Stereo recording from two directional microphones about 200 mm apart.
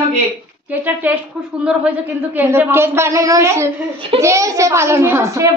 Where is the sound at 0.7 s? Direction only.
10° right (ahead or behind).